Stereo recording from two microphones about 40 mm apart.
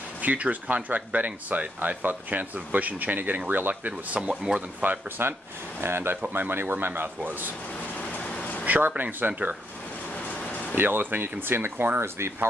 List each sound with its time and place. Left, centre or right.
0.2 s speech: right
4.1 s speech: right
5.2 s speech: right
5.8 s speech: right
6.3 s speech: right
7.0 s speech: right
8.1 s a sound: left
8.6 s speech: right
10.2 s a sound: left
10.7 s speech: right
12.0 s speech: right